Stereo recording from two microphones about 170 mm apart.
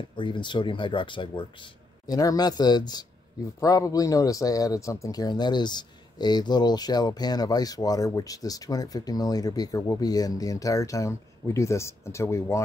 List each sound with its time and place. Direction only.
0.1 s speech: 30° left (ahead or behind)